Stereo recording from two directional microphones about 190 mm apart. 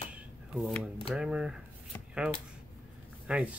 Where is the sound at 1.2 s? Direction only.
5° right (ahead or behind).